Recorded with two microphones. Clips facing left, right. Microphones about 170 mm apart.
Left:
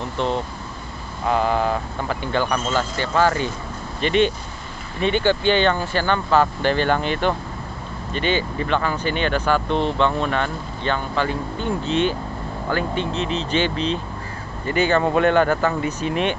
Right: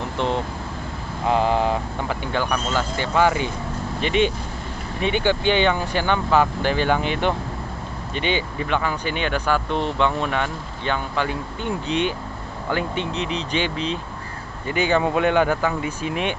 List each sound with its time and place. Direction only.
1.2 s vehicle: 25° right (ahead or behind)
2.0 s speech: 10° right (ahead or behind)